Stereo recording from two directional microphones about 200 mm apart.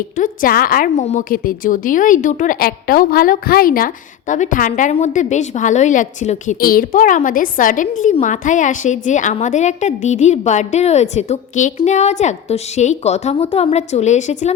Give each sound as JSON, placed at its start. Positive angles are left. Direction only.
{"t": 0.2, "sound": "a woman's voice", "side_deg": 45}